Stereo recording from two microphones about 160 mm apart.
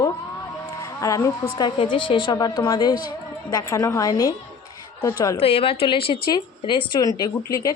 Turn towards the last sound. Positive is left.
turn(degrees=20)  # may be behind; listen again after turning